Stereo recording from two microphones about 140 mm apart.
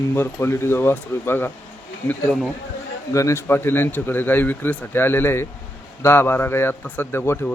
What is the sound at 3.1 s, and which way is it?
A man's voice, 20° left (ahead or behind).